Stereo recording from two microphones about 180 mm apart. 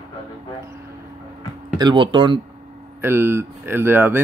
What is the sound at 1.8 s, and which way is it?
Speech, 25° right (ahead or behind).